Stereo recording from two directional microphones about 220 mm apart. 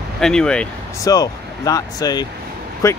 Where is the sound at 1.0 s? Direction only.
15° left (ahead or behind).